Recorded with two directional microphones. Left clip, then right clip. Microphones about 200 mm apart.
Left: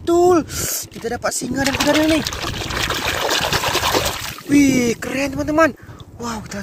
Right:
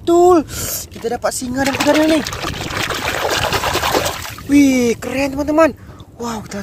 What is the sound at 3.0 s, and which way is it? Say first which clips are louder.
Trickle: right 2 dB; 10° right (ahead or behind).